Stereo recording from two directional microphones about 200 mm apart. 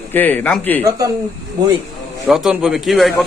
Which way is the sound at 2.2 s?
Centre (ahead or behind).